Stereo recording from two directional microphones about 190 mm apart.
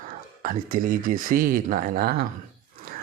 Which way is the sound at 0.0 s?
45° right (ahead or behind).